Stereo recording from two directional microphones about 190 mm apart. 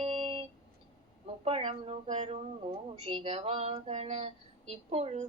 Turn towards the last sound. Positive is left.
turn(degrees=-35)  # may be behind; listen again after turning